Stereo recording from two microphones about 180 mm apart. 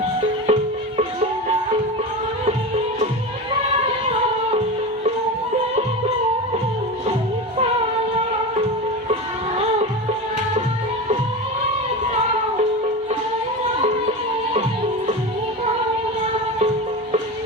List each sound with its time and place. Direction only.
0.4 s music: 35° right (ahead or behind)